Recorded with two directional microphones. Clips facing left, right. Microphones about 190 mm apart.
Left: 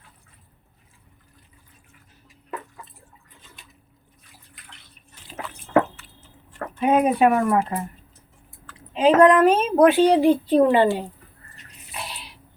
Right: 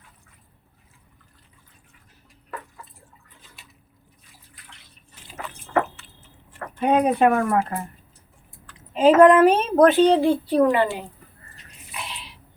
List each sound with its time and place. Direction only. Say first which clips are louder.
6.7 s speech: even; 5° left (ahead or behind)
9.0 s a woman's voice: right 2 dB; 5° right (ahead or behind); by 11.0 s 30° left (ahead or behind)
11.9 s a sound: left 1 dB; 40° left (ahead or behind)